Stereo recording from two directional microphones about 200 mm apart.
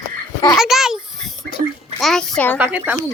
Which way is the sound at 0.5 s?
Centre (ahead or behind).